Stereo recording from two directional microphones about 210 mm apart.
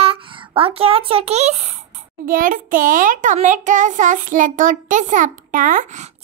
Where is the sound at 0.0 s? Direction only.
25° right (ahead or behind).